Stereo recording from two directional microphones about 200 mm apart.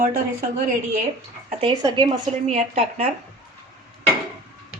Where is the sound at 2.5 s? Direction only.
35° right (ahead or behind).